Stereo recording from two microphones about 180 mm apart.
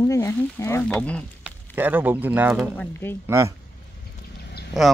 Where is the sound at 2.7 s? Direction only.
10° left (ahead or behind).